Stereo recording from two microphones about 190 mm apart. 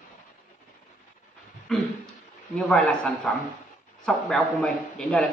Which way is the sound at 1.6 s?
Centre (ahead or behind).